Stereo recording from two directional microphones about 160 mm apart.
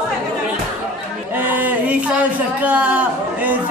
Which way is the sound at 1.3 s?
10° right (ahead or behind).